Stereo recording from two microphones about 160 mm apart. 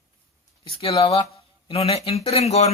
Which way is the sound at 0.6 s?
35° left (ahead or behind).